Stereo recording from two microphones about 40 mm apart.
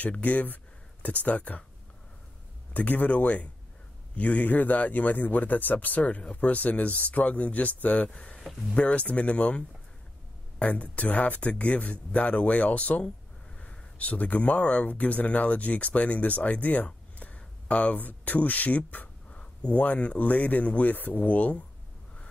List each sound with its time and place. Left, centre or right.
0.2 s speech: left
2.7 s speech: left
8.1 s speech: left
18.0 s speech: left